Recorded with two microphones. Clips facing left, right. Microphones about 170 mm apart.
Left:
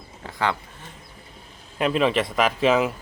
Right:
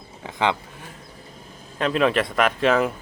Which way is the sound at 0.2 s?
20° right (ahead or behind).